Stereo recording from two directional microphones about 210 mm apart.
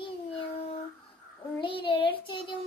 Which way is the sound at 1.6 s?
25° left (ahead or behind).